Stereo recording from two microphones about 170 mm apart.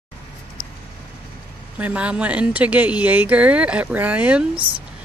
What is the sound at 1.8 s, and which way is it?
A woman's voice, 10° right (ahead or behind).